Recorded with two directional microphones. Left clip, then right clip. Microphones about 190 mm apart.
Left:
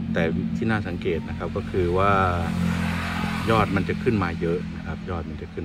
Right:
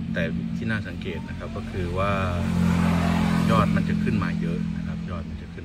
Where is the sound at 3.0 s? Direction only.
30° right (ahead or behind).